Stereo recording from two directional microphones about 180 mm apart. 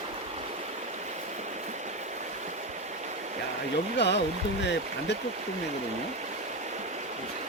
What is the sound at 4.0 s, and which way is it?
Speech, 70° left (ahead or behind).